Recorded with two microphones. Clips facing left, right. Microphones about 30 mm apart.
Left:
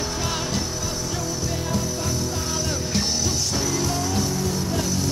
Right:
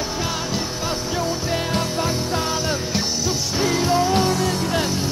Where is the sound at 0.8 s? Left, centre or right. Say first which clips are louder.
Right 5 dB; right.